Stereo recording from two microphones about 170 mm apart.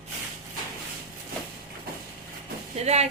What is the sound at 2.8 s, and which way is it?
Speech, 40° right (ahead or behind).